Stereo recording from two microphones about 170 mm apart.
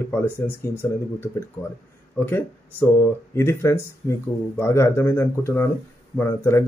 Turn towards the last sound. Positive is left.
turn(degrees=15)  # may be behind; listen again after turning